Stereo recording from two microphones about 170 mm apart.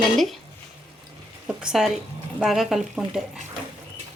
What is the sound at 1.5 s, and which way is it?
Speech, 5° right (ahead or behind).